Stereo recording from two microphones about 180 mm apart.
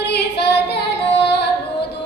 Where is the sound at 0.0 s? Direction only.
70° left (ahead or behind).